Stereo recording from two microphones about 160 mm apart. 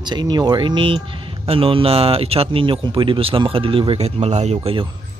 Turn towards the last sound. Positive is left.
turn(degrees=-35)  # may be behind; listen again after turning